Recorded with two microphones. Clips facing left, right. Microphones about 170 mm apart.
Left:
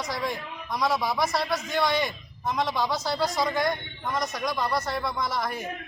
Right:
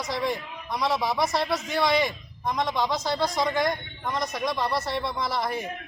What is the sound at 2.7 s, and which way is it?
Speech, 20° right (ahead or behind).